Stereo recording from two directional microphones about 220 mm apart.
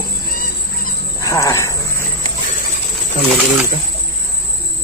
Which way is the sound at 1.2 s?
15° left (ahead or behind).